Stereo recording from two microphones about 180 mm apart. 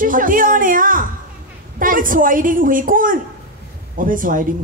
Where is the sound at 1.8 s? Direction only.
50° right (ahead or behind).